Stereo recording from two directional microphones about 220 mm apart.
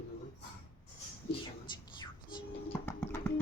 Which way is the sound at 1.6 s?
20° left (ahead or behind).